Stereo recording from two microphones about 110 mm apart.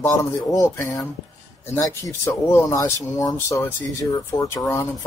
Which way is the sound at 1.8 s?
30° left (ahead or behind).